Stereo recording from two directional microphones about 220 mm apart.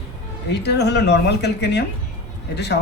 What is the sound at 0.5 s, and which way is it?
Speech, 50° left (ahead or behind).